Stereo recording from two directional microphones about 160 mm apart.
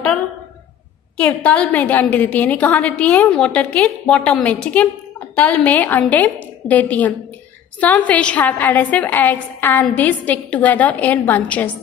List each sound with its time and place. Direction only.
1.1 s a woman's voice: 5° left (ahead or behind)